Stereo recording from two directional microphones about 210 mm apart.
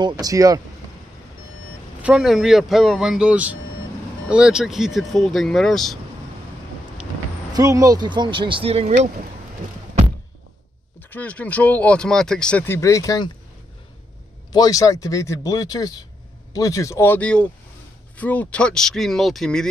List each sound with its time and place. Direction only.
0.0 s speech: 20° right (ahead or behind)
2.0 s speech: 5° right (ahead or behind)
7.5 s speech: 15° right (ahead or behind)
11.0 s speech: 10° left (ahead or behind)
14.5 s speech: 15° left (ahead or behind)